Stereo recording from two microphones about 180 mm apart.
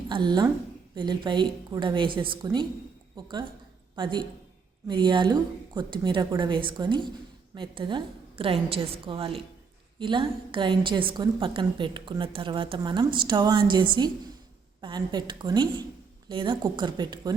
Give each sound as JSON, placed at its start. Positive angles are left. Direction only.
{"t": 0.1, "sound": "a woman's voice", "side_deg": -25}